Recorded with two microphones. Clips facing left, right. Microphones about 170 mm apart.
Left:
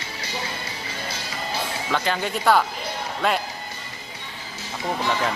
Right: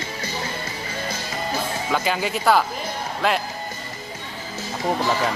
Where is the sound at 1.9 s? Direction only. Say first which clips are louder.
Right 1 dB; 5° right (ahead or behind).